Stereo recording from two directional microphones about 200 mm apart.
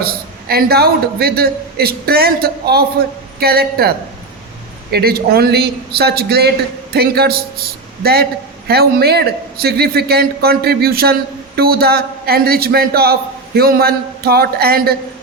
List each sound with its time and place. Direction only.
0.0 s a man's voice: 50° right (ahead or behind)